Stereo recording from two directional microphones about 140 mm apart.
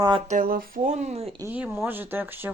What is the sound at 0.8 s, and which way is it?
Speech, 55° right (ahead or behind).